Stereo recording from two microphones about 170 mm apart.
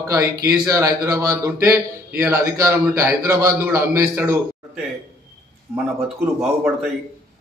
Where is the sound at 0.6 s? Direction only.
20° right (ahead or behind).